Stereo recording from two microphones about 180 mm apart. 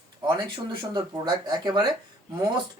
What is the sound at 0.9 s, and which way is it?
Speech, 25° right (ahead or behind).